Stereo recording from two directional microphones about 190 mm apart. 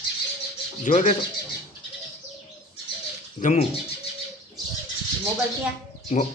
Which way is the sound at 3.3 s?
40° left (ahead or behind).